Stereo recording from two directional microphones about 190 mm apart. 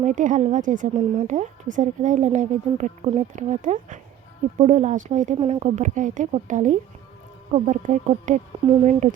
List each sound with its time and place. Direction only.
0.0 s a woman's voice: 40° right (ahead or behind)